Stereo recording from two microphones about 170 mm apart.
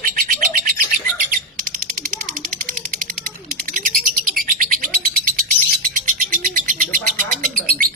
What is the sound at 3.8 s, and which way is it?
Bird, 50° right (ahead or behind).